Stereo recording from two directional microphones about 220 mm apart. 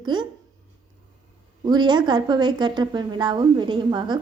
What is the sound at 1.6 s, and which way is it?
A woman's voice, 20° right (ahead or behind).